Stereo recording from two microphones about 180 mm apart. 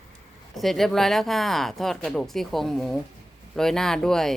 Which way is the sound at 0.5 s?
Centre (ahead or behind).